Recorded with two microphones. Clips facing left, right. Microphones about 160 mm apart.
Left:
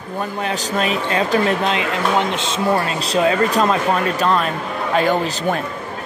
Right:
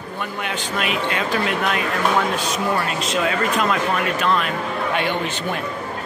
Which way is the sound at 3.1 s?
35° left (ahead or behind).